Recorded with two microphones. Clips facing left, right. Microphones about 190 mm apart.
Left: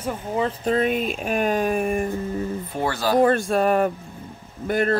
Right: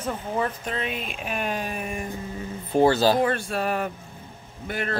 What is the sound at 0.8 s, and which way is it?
Speech, 45° left (ahead or behind).